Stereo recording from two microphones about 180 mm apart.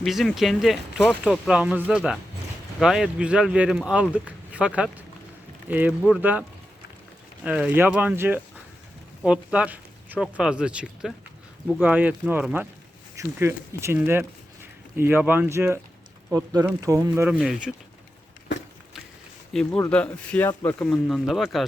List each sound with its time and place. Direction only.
0.0 s speech: centre (ahead or behind)
7.4 s speech: 5° right (ahead or behind)
17.3 s speech: centre (ahead or behind)
19.5 s speech: centre (ahead or behind)